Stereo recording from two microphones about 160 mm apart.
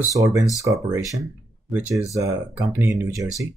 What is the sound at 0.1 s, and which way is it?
Speech, 20° right (ahead or behind).